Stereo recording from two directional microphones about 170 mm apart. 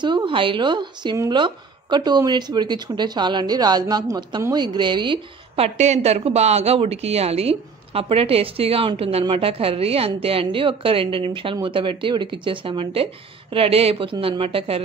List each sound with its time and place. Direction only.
0.0 s speech: 30° right (ahead or behind)
5.8 s speech: 40° right (ahead or behind)